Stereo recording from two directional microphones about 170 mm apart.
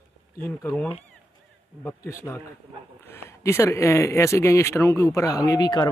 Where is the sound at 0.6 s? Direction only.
10° left (ahead or behind); by 5.8 s 25° left (ahead or behind).